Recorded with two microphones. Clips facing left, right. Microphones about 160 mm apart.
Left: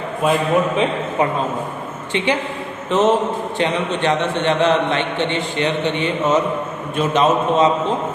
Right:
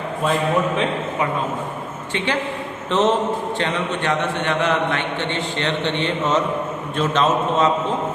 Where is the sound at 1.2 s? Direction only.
30° left (ahead or behind).